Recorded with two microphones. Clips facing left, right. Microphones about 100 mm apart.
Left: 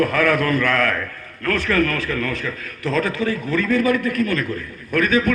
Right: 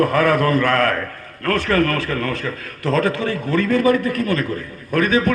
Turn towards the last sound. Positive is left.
turn(degrees=-35)  # may be behind; listen again after turning